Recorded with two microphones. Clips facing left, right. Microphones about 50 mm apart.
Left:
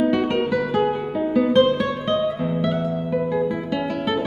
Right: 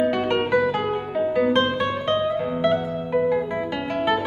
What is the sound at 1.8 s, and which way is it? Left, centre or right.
Music, right.